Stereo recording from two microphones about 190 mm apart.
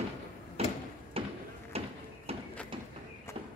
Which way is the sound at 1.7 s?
30° right (ahead or behind).